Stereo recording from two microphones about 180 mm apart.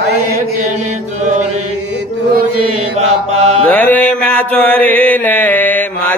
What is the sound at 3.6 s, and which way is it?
Mantra, 10° left (ahead or behind).